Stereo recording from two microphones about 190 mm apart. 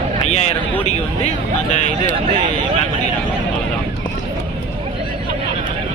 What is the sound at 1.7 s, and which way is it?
Speech, 40° left (ahead or behind).